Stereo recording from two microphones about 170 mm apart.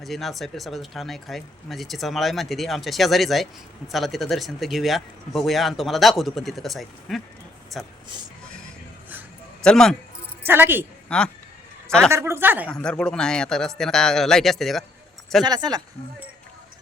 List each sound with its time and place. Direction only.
0.0 s speech: centre (ahead or behind)
9.6 s speech: 5° left (ahead or behind)
10.4 s a woman's voice: 10° right (ahead or behind)
11.1 s a man's voice: 5° left (ahead or behind)
12.1 s a woman's voice: 15° right (ahead or behind)
12.6 s speech: 5° left (ahead or behind)
15.4 s speech: 25° right (ahead or behind)